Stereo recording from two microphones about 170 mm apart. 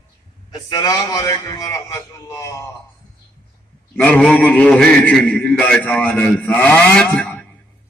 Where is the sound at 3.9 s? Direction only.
10° left (ahead or behind).